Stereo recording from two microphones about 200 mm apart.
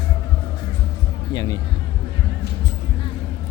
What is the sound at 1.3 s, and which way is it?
Music, 20° left (ahead or behind).